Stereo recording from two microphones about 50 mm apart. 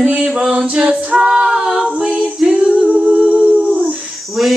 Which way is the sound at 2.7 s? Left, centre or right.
Right.